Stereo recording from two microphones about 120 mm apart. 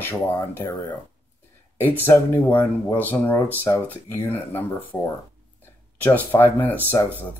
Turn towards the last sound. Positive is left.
turn(degrees=15)  # may be behind; listen again after turning